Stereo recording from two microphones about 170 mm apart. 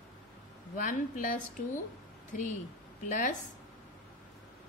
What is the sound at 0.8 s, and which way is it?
Speech, 55° left (ahead or behind).